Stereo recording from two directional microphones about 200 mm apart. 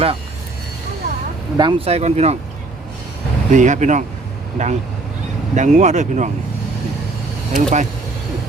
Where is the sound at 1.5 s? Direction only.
25° right (ahead or behind).